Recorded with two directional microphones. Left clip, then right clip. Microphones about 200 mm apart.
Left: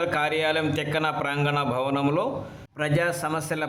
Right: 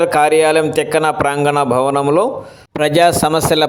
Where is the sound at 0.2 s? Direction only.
35° right (ahead or behind).